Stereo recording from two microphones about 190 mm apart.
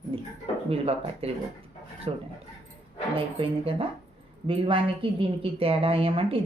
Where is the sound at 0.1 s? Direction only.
30° right (ahead or behind).